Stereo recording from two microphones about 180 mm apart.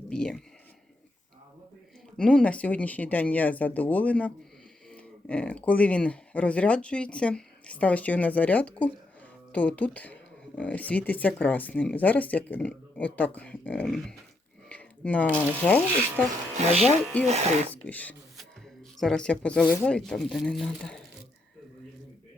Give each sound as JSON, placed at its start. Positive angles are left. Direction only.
{"t": 0.1, "sound": "speech", "side_deg": 5}
{"t": 2.1, "sound": "speech", "side_deg": 5}
{"t": 17.2, "sound": "speech", "side_deg": -40}
{"t": 17.8, "sound": "speech", "side_deg": 10}